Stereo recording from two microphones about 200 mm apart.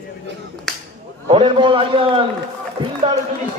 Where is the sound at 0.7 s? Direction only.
Centre (ahead or behind).